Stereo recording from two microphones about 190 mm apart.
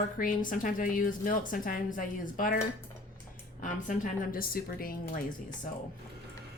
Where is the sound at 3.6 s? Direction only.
45° left (ahead or behind).